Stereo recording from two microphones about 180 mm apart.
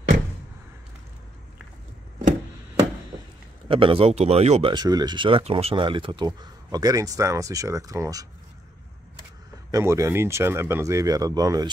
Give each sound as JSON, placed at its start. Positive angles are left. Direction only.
{"t": 3.6, "sound": "speech", "side_deg": -30}
{"t": 9.7, "sound": "speech", "side_deg": -15}